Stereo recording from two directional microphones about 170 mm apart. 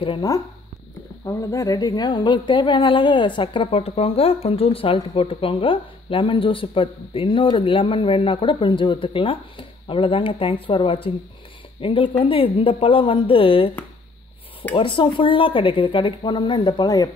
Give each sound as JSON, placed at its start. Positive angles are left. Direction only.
{"t": 0.0, "sound": "a woman's voice", "side_deg": 25}
{"t": 14.8, "sound": "a woman's voice", "side_deg": 30}